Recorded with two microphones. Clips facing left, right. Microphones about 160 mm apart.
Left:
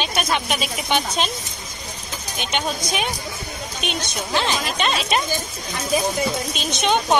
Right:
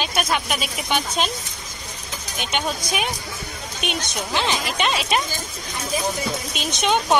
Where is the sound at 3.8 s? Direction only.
15° right (ahead or behind).